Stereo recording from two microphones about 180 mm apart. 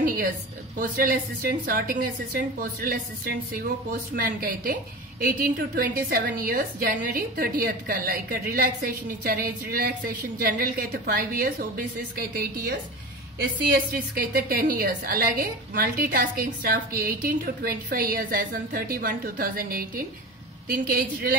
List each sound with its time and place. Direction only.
0.0 s a sound: 50° right (ahead or behind)
0.7 s a woman's voice: 50° right (ahead or behind)
14.1 s a woman's voice: 55° right (ahead or behind)